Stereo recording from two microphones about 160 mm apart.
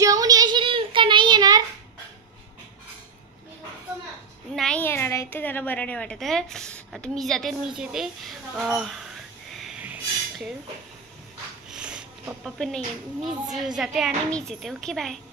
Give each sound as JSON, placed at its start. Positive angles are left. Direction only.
{"t": 0.0, "sound": "child singing", "side_deg": -20}
{"t": 4.6, "sound": "a woman's voice", "side_deg": 5}
{"t": 9.6, "sound": "a sound", "side_deg": -10}
{"t": 11.7, "sound": "a woman's voice", "side_deg": -5}